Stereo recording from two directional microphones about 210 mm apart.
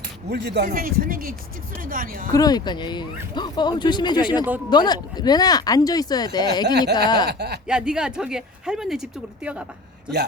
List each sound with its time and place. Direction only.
0.3 s speech: 55° right (ahead or behind)
2.3 s speech: 20° left (ahead or behind)
7.3 s speech: 50° right (ahead or behind)
7.7 s speech: 5° right (ahead or behind)